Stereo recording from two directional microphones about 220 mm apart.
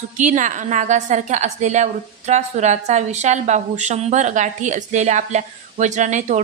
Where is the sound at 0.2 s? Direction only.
35° right (ahead or behind).